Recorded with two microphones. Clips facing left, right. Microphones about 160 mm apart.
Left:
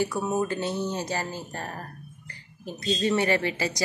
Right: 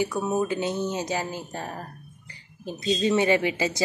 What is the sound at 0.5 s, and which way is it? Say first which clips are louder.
Speech: right 2 dB; 15° right (ahead or behind).